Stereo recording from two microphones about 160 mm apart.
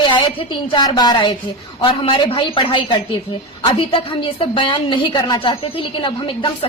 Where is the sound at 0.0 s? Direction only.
30° left (ahead or behind).